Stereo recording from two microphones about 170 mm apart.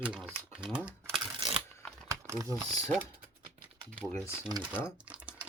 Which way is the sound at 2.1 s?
20° right (ahead or behind).